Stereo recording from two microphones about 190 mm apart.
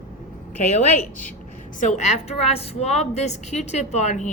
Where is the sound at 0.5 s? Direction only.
40° left (ahead or behind).